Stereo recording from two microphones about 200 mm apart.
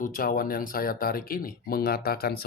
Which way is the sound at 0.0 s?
45° left (ahead or behind).